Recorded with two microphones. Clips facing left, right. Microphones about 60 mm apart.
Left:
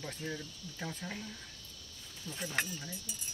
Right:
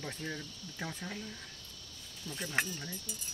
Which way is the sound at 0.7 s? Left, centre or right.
Centre.